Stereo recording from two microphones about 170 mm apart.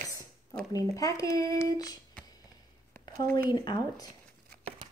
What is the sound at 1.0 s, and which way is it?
A woman's voice, 20° left (ahead or behind).